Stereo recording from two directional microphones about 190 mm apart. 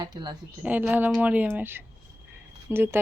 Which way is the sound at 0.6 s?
10° right (ahead or behind).